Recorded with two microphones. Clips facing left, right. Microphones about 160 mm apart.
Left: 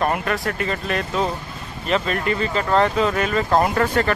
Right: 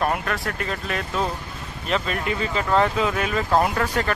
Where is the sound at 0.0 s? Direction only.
Centre (ahead or behind).